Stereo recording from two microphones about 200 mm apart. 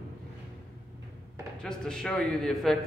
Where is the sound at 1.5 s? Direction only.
5° left (ahead or behind).